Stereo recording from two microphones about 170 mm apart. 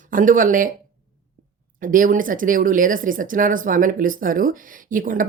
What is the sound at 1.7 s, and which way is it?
Speech, 50° right (ahead or behind).